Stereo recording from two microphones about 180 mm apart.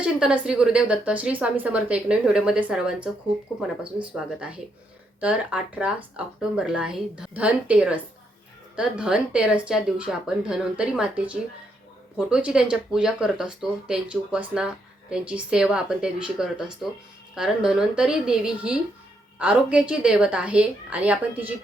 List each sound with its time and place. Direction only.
0.0 s a woman's voice: 5° right (ahead or behind)